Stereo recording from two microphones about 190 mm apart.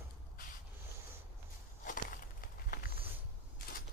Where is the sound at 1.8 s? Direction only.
45° left (ahead or behind).